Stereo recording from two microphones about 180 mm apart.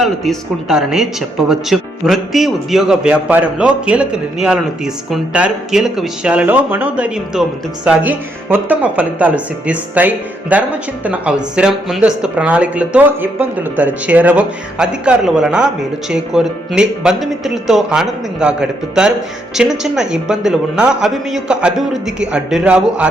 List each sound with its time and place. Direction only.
0.0 s a man's voice: centre (ahead or behind)